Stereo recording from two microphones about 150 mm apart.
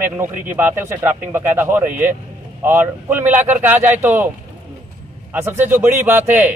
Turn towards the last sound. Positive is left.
turn(degrees=-15)  # may be behind; listen again after turning